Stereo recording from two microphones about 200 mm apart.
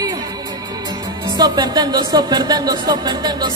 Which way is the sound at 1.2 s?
20° right (ahead or behind).